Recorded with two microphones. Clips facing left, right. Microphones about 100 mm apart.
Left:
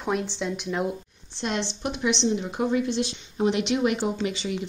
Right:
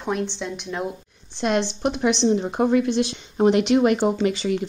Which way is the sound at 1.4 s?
55° right (ahead or behind).